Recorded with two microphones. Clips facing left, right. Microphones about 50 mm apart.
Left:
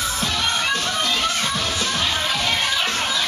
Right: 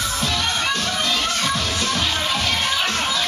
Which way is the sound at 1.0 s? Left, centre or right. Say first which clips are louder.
Even; centre.